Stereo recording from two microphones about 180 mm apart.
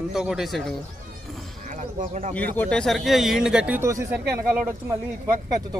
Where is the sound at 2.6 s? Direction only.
5° left (ahead or behind); by 4.1 s 15° right (ahead or behind).